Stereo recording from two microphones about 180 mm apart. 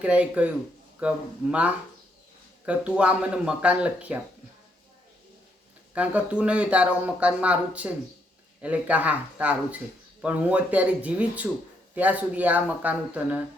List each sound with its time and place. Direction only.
0.0 s speech: 5° right (ahead or behind)
5.9 s speech: 5° right (ahead or behind)